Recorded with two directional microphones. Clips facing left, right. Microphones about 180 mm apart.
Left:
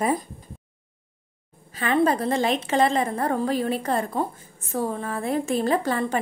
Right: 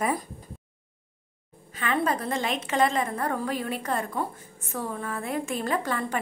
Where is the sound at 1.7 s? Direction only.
35° left (ahead or behind).